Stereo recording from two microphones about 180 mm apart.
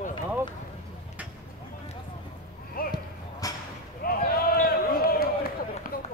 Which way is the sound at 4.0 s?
55° left (ahead or behind).